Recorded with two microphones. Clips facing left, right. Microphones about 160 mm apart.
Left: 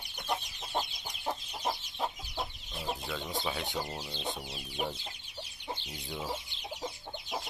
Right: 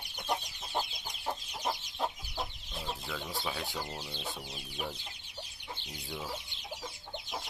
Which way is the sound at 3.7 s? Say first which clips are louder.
Left 3 dB; 15° left (ahead or behind).